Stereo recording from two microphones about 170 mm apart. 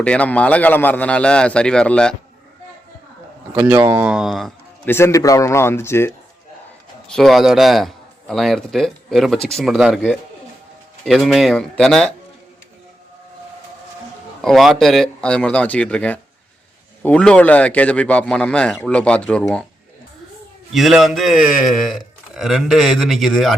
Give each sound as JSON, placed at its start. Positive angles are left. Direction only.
{"t": 0.0, "sound": "a man's voice", "side_deg": 5}
{"t": 3.5, "sound": "speech", "side_deg": -10}
{"t": 4.1, "sound": "a man's voice", "side_deg": 0}
{"t": 4.9, "sound": "a man's voice", "side_deg": 15}
{"t": 7.1, "sound": "a man's voice", "side_deg": 0}
{"t": 11.0, "sound": "a man's voice", "side_deg": 0}
{"t": 14.4, "sound": "a man's voice", "side_deg": 0}
{"t": 20.7, "sound": "a man's voice", "side_deg": 0}